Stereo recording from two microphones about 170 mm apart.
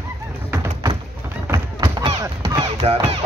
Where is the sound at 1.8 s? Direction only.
25° right (ahead or behind).